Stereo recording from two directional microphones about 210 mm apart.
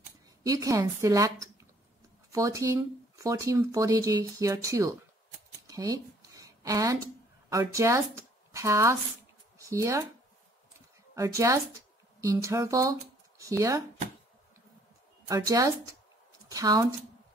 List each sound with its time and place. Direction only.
0.4 s a woman's voice: 15° right (ahead or behind)
5.7 s a sound: 15° right (ahead or behind)
7.4 s speech: 15° right (ahead or behind)
11.1 s speech: 15° right (ahead or behind)
15.2 s speech: 15° right (ahead or behind)